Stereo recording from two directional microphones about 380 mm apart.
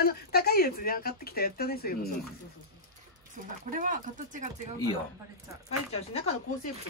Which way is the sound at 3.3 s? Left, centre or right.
Centre.